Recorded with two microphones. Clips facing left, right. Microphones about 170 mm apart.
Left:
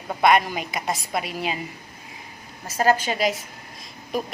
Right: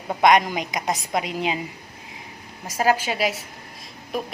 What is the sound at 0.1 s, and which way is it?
A woman's voice, 20° right (ahead or behind).